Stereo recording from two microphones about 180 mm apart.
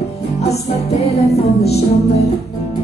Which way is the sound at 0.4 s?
35° left (ahead or behind).